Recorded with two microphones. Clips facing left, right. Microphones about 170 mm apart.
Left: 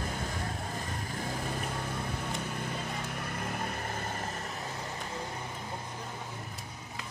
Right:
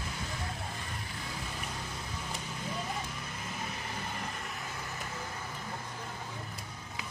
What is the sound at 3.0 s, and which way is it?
Vehicle, 60° left (ahead or behind).